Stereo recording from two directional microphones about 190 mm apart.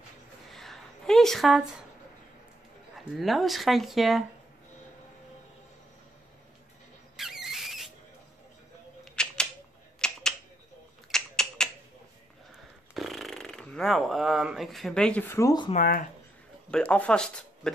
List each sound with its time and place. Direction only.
0.5 s a sound: centre (ahead or behind)
3.2 s speech: centre (ahead or behind)
7.2 s a sound: centre (ahead or behind)
9.1 s typewriter: 5° left (ahead or behind)
9.9 s a sound: 5° left (ahead or behind)
11.1 s typewriter: 5° left (ahead or behind)
12.9 s speech: centre (ahead or behind); by 15.7 s 20° left (ahead or behind)
15.7 s speech: 50° left (ahead or behind)
16.7 s speech: 5° left (ahead or behind)